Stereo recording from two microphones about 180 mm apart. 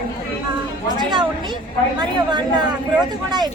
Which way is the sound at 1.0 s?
25° right (ahead or behind).